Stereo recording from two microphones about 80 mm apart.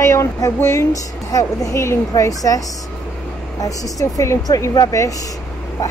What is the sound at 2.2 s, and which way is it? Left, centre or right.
A woman's voice, left.